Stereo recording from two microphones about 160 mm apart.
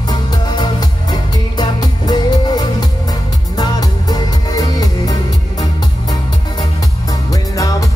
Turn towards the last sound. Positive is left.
turn(degrees=20)  # may be behind; listen again after turning